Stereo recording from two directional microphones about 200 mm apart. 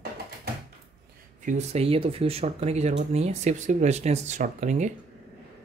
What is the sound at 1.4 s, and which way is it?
Speech, 35° right (ahead or behind).